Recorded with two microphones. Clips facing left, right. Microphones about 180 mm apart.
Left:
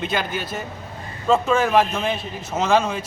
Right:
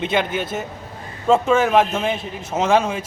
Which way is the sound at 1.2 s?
10° right (ahead or behind).